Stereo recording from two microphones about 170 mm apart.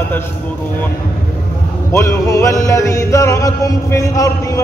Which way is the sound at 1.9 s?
15° left (ahead or behind).